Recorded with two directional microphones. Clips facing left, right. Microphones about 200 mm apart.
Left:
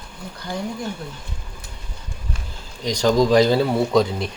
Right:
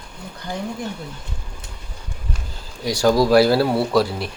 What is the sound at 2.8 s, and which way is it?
Speech, 10° right (ahead or behind).